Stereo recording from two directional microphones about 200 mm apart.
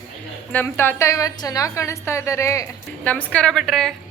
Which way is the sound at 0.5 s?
10° left (ahead or behind).